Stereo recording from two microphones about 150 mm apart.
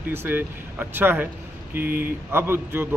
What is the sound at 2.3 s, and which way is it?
Speech, 15° right (ahead or behind).